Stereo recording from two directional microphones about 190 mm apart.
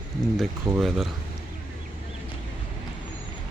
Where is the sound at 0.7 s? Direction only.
Centre (ahead or behind).